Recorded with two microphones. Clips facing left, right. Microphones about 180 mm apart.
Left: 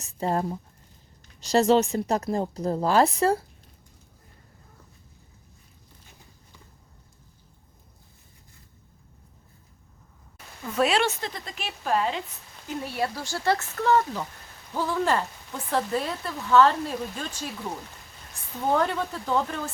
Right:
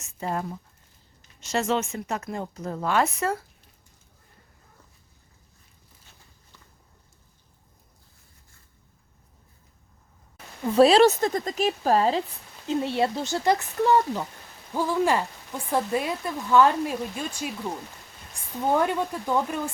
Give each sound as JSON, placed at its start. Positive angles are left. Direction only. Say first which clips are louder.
{"t": 0.0, "sound": "speech", "louder": "left 4 dB", "side_deg": 35}
{"t": 10.6, "sound": "speech", "louder": "right 8 dB", "side_deg": -30}
{"t": 12.6, "sound": "speech", "louder": "right 5 dB", "side_deg": -25}
{"t": 18.7, "sound": "speech", "louder": "right 1 dB", "side_deg": -10}